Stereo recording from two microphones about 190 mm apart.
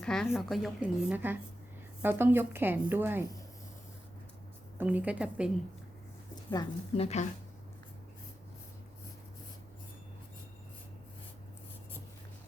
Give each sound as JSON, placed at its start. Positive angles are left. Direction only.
{"t": 0.0, "sound": "a woman's voice", "side_deg": 5}
{"t": 4.8, "sound": "a woman's voice", "side_deg": -10}
{"t": 6.5, "sound": "a woman's voice", "side_deg": 20}
{"t": 7.0, "sound": "speech", "side_deg": 35}